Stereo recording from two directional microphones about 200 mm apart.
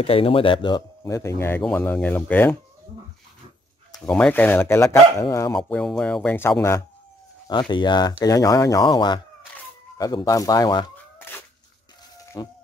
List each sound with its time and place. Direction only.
0.0 s speech: 25° left (ahead or behind); by 2.5 s 10° left (ahead or behind)
4.0 s speech: 5° left (ahead or behind)
7.4 s speech: 25° left (ahead or behind)
11.1 s dog: 10° left (ahead or behind)
12.4 s speech: 20° left (ahead or behind)